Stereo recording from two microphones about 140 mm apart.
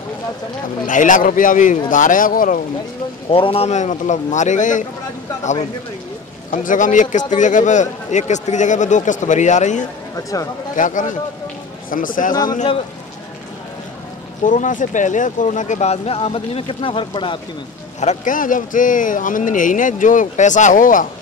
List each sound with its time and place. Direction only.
0.8 s speech: 65° left (ahead or behind)
3.3 s a man's voice: 40° left (ahead or behind); by 4.8 s 65° left (ahead or behind)
6.5 s a man's voice: 65° left (ahead or behind)
10.1 s speech: 25° left (ahead or behind)
10.8 s a man's voice: 65° left (ahead or behind)
11.9 s speech: 75° left (ahead or behind)
14.4 s a man's voice: 65° left (ahead or behind); by 17.4 s 35° left (ahead or behind)
18.0 s speech: 70° left (ahead or behind)